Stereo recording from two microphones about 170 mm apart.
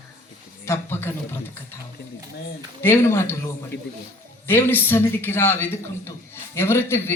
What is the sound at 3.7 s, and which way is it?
Speech, 90° left.